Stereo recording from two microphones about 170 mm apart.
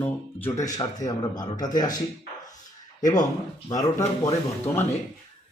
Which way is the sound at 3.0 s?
20° left (ahead or behind).